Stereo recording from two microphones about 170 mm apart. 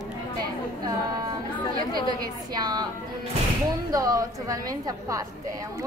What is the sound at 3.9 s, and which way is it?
A woman's voice, 20° right (ahead or behind).